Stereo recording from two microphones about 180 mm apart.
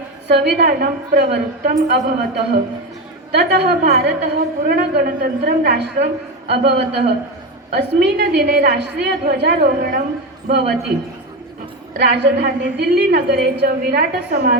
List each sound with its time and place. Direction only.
0.3 s a woman's voice: 65° right (ahead or behind)
11.9 s a woman's voice: 70° right (ahead or behind)